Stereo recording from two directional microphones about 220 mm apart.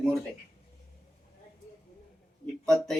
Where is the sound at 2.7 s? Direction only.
Centre (ahead or behind).